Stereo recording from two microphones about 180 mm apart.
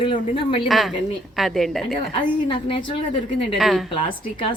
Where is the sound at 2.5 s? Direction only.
30° left (ahead or behind).